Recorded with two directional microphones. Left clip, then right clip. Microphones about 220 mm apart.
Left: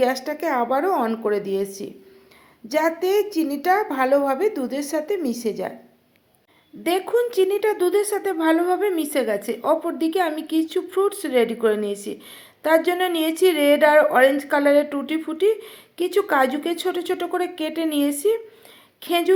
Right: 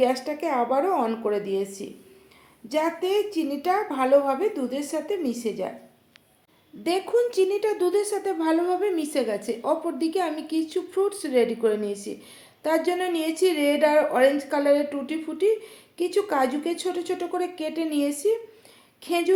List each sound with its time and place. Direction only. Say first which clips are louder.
0.0 s a woman's voice: left 2 dB; 35° left (ahead or behind)
6.8 s a woman's voice: left 2 dB; 25° left (ahead or behind)